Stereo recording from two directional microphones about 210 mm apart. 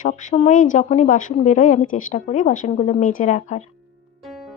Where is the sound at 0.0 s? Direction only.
35° left (ahead or behind).